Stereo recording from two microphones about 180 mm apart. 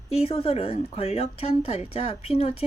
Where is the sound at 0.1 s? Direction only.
35° left (ahead or behind).